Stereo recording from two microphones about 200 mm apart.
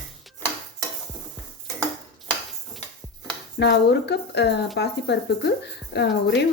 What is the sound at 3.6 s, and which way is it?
Speech, 55° left (ahead or behind).